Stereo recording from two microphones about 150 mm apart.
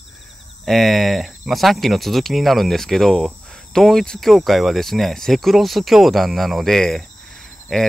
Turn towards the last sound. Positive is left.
turn(degrees=5)  # may be behind; listen again after turning